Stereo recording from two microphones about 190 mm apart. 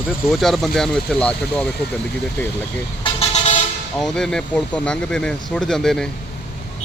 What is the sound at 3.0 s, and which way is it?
Vehicle, 35° left (ahead or behind).